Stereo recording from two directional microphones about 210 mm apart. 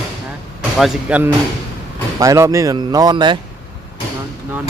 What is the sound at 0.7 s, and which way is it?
Speech, centre (ahead or behind).